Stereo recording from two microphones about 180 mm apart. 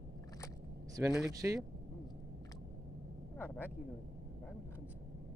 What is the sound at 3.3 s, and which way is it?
Vehicle, 10° left (ahead or behind).